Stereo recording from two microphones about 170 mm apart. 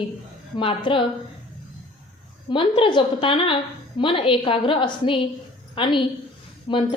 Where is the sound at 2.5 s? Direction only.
30° left (ahead or behind).